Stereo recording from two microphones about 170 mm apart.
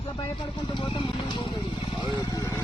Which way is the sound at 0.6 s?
30° left (ahead or behind).